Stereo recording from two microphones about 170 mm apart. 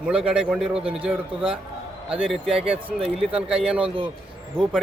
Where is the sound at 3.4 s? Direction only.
5° right (ahead or behind).